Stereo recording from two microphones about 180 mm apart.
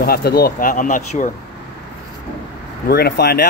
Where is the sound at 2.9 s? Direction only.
60° left (ahead or behind).